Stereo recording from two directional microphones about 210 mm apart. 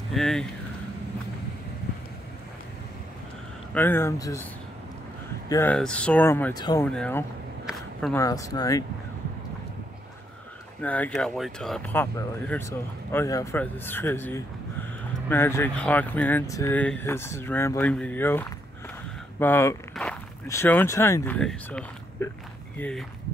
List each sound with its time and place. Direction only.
0.1 s speech: centre (ahead or behind)
3.7 s speech: 10° left (ahead or behind)
5.5 s speech: 10° left (ahead or behind)
7.6 s a sound: centre (ahead or behind)
8.2 s speech: 15° left (ahead or behind)
10.8 s speech: 5° left (ahead or behind)